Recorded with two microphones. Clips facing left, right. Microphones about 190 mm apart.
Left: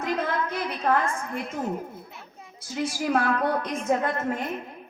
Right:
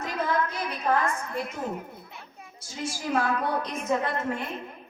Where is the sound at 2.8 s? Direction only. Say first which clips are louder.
Left 3 dB; 55° left (ahead or behind).